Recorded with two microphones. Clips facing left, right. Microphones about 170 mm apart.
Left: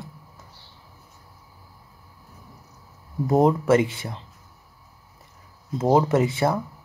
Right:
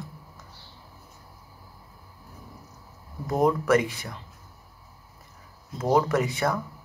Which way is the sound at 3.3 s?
25° left (ahead or behind).